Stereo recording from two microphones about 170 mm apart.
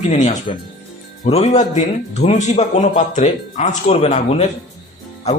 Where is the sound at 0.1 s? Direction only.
40° left (ahead or behind).